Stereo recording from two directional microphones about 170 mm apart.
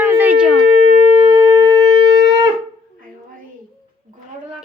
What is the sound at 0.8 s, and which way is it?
Shofar, 40° right (ahead or behind).